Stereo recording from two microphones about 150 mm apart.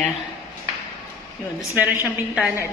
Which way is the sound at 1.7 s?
10° right (ahead or behind).